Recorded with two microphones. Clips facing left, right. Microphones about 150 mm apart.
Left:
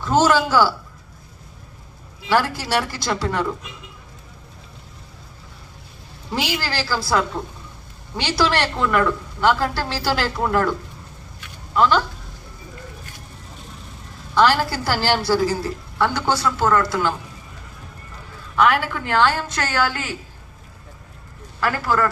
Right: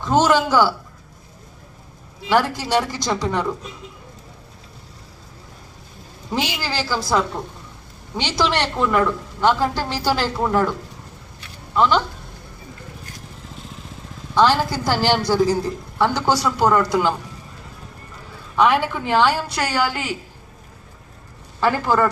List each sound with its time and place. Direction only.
0.0 s a woman's voice: 15° right (ahead or behind)
2.3 s a woman's voice: 15° right (ahead or behind)
6.6 s a woman's voice: 15° right (ahead or behind)
14.3 s a woman's voice: 15° right (ahead or behind)
18.5 s a woman's voice: 15° right (ahead or behind)
21.6 s a woman's voice: 20° right (ahead or behind)